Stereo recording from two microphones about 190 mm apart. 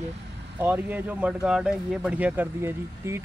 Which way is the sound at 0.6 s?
10° right (ahead or behind).